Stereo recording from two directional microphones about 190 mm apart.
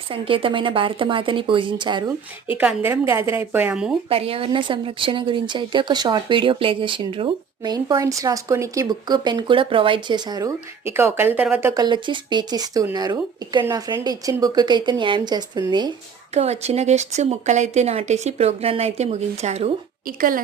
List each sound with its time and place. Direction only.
0.1 s a woman's voice: 30° right (ahead or behind)
2.6 s a woman's voice: 10° right (ahead or behind)
4.1 s a woman's voice: 30° right (ahead or behind)
10.9 s a woman's voice: 10° right (ahead or behind)
11.8 s a woman's voice: 25° right (ahead or behind)
16.3 s speech: 35° right (ahead or behind)